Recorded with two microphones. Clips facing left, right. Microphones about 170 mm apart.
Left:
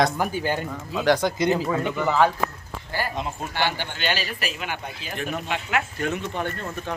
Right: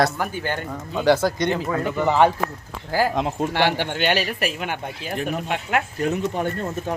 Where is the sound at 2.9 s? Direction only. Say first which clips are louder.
Right 7 dB; 90° right; by 5.1 s 55° right (ahead or behind).